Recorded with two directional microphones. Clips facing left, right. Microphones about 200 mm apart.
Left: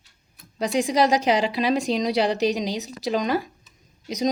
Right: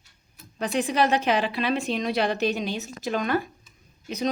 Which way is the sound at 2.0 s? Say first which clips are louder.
Left 3 dB; 15° left (ahead or behind).